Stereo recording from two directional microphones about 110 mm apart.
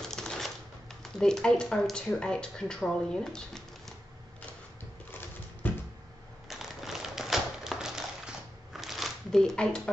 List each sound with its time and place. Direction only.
0.0 s typewriter: 5° left (ahead or behind)
1.1 s speech: 5° left (ahead or behind)
5.1 s a sound: 15° left (ahead or behind)
6.5 s typewriter: centre (ahead or behind)